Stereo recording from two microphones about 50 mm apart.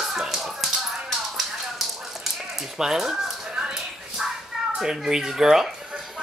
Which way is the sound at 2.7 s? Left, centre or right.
Centre.